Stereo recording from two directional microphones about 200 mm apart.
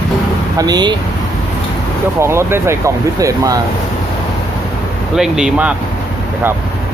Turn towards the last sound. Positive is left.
turn(degrees=-5)  # may be behind; listen again after turning